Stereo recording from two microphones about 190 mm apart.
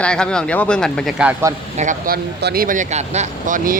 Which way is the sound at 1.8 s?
45° right (ahead or behind).